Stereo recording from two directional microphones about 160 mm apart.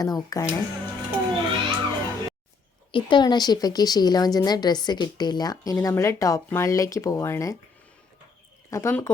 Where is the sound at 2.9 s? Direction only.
30° left (ahead or behind).